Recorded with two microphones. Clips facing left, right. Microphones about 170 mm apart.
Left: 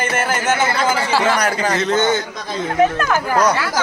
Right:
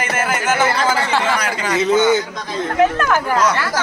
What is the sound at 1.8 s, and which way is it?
Speech, 5° right (ahead or behind).